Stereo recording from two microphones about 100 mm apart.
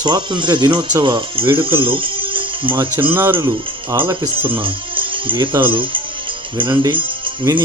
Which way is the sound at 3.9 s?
55° right (ahead or behind).